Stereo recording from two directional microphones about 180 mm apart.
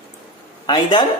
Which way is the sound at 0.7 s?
25° left (ahead or behind).